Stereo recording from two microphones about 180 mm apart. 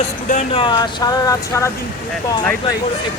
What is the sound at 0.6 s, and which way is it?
Speech, 25° left (ahead or behind).